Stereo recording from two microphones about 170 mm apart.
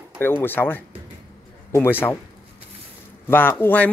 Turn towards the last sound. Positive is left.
turn(degrees=10)  # may be behind; listen again after turning